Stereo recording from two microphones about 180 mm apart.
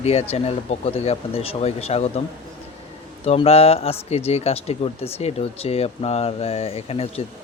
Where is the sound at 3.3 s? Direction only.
35° left (ahead or behind).